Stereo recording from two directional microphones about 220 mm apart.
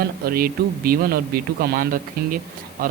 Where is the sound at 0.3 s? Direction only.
40° right (ahead or behind).